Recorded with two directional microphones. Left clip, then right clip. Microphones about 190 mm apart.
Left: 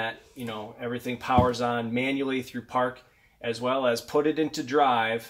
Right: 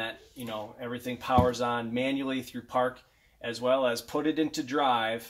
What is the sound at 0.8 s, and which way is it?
Speech, 25° left (ahead or behind).